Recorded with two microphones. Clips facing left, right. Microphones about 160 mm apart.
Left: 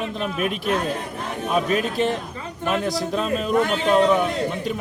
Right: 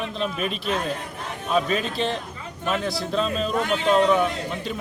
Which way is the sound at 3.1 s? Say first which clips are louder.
Right 2 dB; 10° left (ahead or behind).